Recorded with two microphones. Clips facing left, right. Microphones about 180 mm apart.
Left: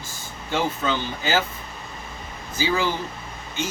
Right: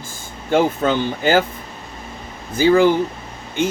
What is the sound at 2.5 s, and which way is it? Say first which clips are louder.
Speech: right 11 dB; 55° right (ahead or behind).